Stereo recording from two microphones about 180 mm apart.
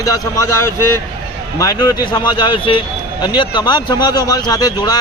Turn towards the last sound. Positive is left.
turn(degrees=20)  # may be behind; listen again after turning